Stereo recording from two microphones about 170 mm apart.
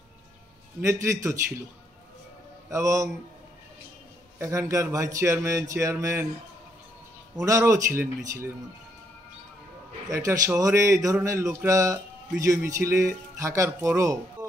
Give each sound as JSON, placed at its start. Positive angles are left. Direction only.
{"t": 0.7, "sound": "a man's voice", "side_deg": -15}
{"t": 2.7, "sound": "a man's voice", "side_deg": -20}
{"t": 4.4, "sound": "a man's voice", "side_deg": -15}
{"t": 7.4, "sound": "a man's voice", "side_deg": -20}
{"t": 10.0, "sound": "a man's voice", "side_deg": -20}